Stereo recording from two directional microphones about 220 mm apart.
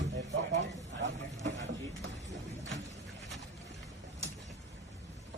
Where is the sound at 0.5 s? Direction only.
55° right (ahead or behind).